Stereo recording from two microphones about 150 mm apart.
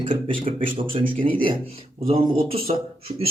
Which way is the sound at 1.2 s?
60° right (ahead or behind).